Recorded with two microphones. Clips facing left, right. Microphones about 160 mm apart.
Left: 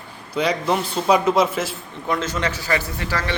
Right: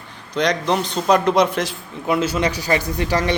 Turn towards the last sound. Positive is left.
turn(degrees=-20)  # may be behind; listen again after turning